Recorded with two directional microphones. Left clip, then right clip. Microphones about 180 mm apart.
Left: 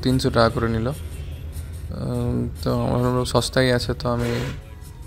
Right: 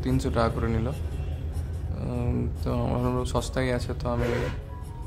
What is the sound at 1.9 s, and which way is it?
Speech, 30° left (ahead or behind).